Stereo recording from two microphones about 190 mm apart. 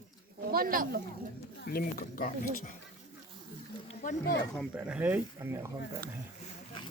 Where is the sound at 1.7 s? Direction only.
50° left (ahead or behind).